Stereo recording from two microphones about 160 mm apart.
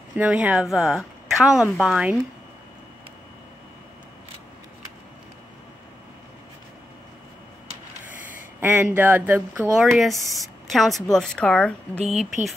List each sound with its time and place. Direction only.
0.1 s speech: 5° right (ahead or behind)
8.2 s a sound: 15° right (ahead or behind)
8.8 s speech: 10° right (ahead or behind)
9.8 s speech: centre (ahead or behind)
12.0 s speech: 45° right (ahead or behind)